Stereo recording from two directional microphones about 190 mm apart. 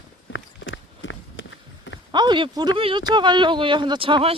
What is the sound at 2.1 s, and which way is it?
Speech, 25° right (ahead or behind).